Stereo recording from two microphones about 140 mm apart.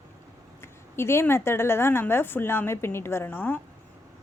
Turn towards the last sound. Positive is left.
turn(degrees=15)  # may be behind; listen again after turning